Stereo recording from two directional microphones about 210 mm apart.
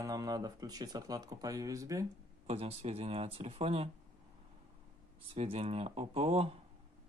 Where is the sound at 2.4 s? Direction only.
30° right (ahead or behind).